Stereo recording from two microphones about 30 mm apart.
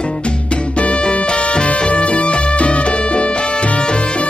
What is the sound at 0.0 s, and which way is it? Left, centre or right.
Music, left.